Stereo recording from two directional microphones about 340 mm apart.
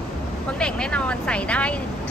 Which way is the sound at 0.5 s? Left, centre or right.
Centre.